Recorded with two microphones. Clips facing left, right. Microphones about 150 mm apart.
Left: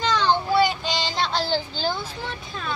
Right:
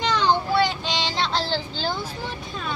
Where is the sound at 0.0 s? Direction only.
15° right (ahead or behind).